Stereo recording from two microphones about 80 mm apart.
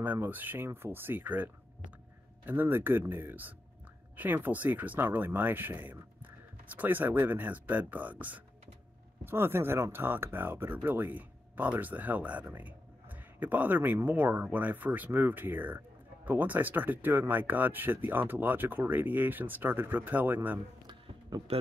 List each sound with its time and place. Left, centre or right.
0.0 s speech: right